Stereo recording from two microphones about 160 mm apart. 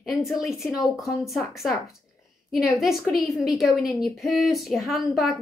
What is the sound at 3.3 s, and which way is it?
A woman's voice, centre (ahead or behind).